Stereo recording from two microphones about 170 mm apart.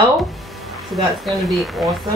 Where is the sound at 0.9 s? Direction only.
Centre (ahead or behind).